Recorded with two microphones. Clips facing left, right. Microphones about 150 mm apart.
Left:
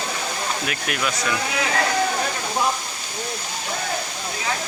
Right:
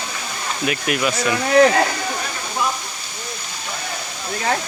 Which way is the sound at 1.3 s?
50° right (ahead or behind).